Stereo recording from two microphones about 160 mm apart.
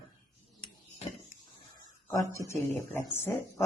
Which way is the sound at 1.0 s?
40° left (ahead or behind).